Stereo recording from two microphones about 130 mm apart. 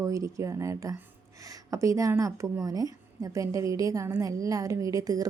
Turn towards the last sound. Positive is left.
turn(degrees=-30)  # may be behind; listen again after turning